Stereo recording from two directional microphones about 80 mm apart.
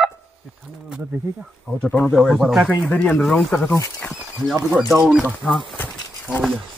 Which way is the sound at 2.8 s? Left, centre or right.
Centre.